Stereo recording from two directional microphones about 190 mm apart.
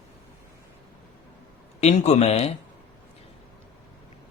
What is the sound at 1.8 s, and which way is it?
Speech, 35° left (ahead or behind).